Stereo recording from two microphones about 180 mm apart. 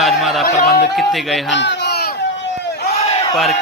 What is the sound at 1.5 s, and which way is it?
Speech, 80° left.